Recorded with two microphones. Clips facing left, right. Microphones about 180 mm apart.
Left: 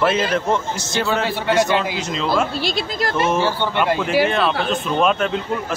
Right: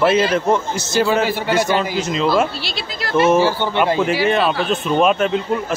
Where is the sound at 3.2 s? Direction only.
5° right (ahead or behind).